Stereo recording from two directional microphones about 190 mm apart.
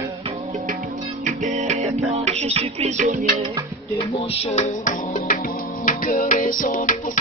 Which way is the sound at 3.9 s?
30° left (ahead or behind).